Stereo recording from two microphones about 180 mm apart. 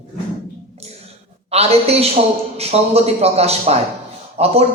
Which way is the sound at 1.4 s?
35° right (ahead or behind).